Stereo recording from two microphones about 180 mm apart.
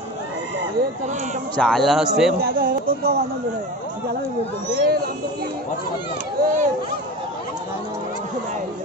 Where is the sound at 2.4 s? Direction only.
55° right (ahead or behind).